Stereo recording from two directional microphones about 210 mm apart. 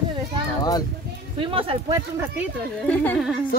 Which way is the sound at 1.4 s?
25° right (ahead or behind).